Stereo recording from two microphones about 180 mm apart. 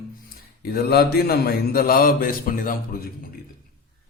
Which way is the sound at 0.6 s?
55° left (ahead or behind).